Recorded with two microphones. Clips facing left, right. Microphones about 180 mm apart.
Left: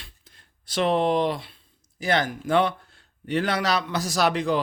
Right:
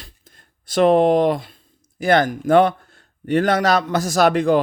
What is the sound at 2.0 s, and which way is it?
A man's voice, 50° right (ahead or behind).